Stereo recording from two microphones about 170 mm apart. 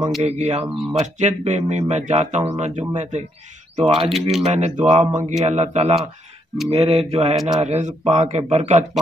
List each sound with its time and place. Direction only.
0.2 s speech: 40° right (ahead or behind)
4.1 s speech: centre (ahead or behind)
4.5 s speech: 40° right (ahead or behind)